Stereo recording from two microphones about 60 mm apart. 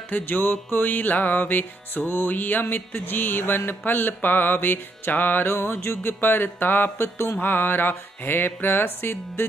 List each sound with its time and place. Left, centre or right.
0.1 s music: left